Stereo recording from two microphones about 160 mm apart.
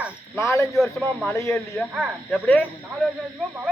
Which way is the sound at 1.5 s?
5° right (ahead or behind).